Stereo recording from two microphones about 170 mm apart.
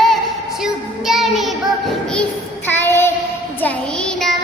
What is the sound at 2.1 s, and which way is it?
Child singing, 10° left (ahead or behind).